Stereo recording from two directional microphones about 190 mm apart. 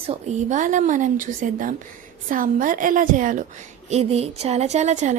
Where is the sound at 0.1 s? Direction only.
40° right (ahead or behind).